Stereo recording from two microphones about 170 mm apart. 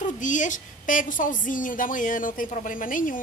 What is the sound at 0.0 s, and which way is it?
A woman's voice, 50° left (ahead or behind).